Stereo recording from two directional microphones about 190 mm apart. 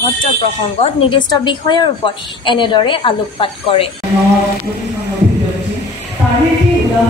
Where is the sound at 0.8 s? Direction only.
25° left (ahead or behind).